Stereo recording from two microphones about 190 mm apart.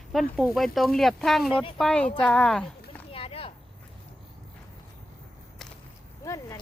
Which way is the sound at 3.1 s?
30° left (ahead or behind).